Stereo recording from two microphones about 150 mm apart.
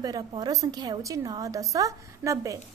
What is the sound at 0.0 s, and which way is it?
A woman's voice, 25° right (ahead or behind).